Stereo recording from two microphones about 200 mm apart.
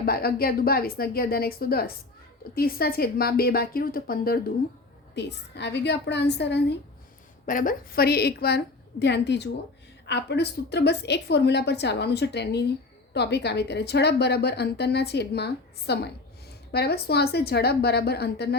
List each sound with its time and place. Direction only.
0.0 s a woman's voice: 50° left (ahead or behind)
5.1 s a woman's voice: 60° left (ahead or behind)
7.4 s a woman's voice: 40° left (ahead or behind)